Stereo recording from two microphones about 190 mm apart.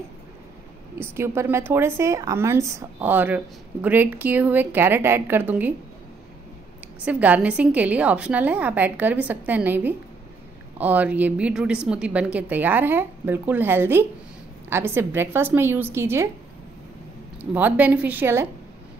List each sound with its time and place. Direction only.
0.9 s a woman's voice: 10° right (ahead or behind)
7.1 s a woman's voice: 10° right (ahead or behind)
17.4 s a woman's voice: 10° right (ahead or behind)